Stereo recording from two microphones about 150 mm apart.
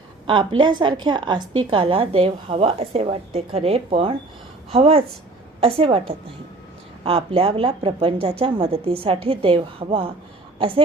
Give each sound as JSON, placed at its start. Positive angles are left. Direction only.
{"t": 0.3, "sound": "a woman's voice", "side_deg": -30}